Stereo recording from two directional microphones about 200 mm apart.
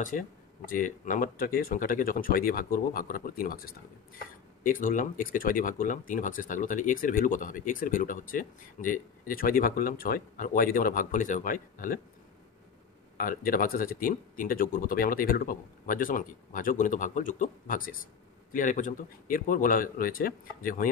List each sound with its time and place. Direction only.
0.1 s speech: 45° left (ahead or behind)
13.2 s speech: 45° left (ahead or behind)